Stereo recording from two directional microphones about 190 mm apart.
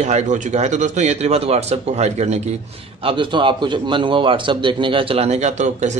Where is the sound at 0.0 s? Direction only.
40° right (ahead or behind).